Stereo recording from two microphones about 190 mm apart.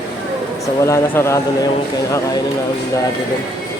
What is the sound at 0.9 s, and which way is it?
Speech, 15° left (ahead or behind).